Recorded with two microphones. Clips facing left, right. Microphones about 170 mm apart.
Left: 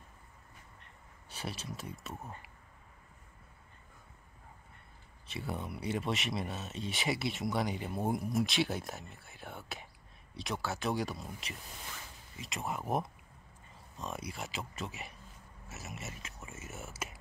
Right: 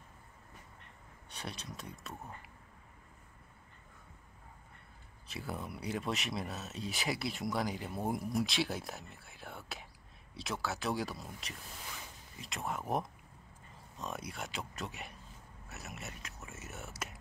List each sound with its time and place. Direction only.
1.3 s speech: 5° left (ahead or behind)
5.3 s speech: centre (ahead or behind)